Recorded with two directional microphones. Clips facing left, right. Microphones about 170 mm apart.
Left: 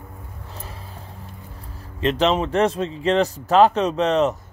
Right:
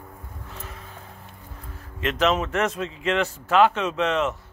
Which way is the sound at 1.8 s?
30° left (ahead or behind).